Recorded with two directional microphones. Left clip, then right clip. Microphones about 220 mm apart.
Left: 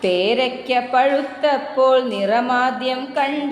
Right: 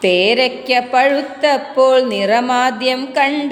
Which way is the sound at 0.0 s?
20° right (ahead or behind).